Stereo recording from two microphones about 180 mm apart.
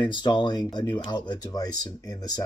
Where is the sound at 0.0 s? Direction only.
25° left (ahead or behind).